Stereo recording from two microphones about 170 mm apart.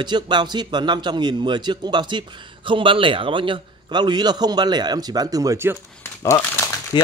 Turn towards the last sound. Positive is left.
turn(degrees=30)  # may be behind; listen again after turning